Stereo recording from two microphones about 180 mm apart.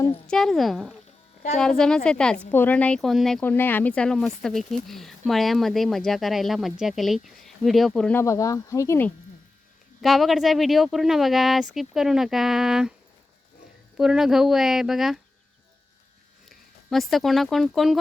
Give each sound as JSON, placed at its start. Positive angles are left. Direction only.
{"t": 0.3, "sound": "speech", "side_deg": 0}
{"t": 8.2, "sound": "speech", "side_deg": 15}
{"t": 10.0, "sound": "speech", "side_deg": 0}
{"t": 13.9, "sound": "speech", "side_deg": -5}
{"t": 16.5, "sound": "speech", "side_deg": 0}